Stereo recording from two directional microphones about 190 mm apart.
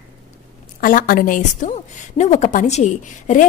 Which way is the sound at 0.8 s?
45° left (ahead or behind).